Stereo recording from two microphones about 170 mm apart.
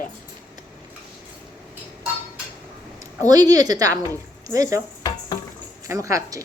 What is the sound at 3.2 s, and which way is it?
A woman's voice, 20° right (ahead or behind).